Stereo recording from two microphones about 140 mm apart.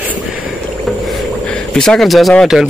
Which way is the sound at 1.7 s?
5° left (ahead or behind).